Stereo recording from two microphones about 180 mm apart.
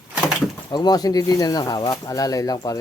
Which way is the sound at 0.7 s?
20° left (ahead or behind).